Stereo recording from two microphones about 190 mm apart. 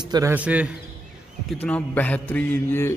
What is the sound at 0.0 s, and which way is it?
Speech, 20° right (ahead or behind).